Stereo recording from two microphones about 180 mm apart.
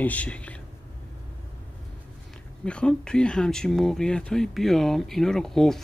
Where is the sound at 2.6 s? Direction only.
5° left (ahead or behind).